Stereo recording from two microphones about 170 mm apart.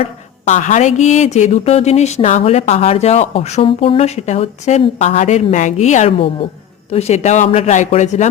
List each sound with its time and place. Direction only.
0.0 s a woman's voice: 45° left (ahead or behind)